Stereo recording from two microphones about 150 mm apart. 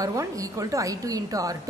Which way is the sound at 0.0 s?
20° right (ahead or behind).